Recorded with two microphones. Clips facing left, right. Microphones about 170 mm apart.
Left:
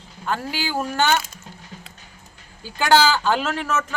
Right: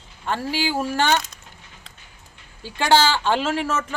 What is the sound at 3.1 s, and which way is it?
Speech, 30° right (ahead or behind).